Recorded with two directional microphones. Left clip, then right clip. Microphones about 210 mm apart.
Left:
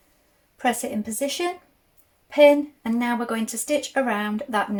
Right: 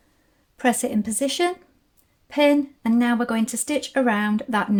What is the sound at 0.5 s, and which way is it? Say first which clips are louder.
Speech: right 2 dB; 45° right (ahead or behind).